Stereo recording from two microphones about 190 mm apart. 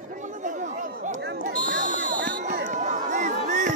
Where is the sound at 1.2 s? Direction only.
60° right (ahead or behind).